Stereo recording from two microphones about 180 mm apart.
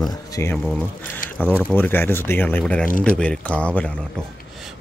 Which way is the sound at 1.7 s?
10° left (ahead or behind).